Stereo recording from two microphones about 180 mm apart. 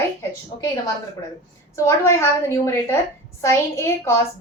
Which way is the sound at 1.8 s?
15° left (ahead or behind).